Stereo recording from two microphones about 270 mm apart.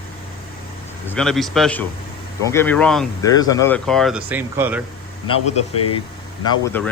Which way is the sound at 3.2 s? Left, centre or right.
Centre.